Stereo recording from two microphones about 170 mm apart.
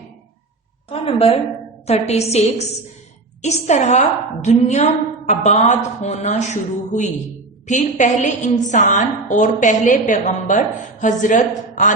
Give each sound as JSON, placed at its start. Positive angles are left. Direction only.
{"t": 0.9, "sound": "a woman's voice", "side_deg": 35}